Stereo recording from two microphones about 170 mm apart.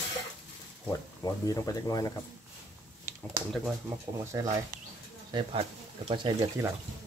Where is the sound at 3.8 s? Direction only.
15° right (ahead or behind).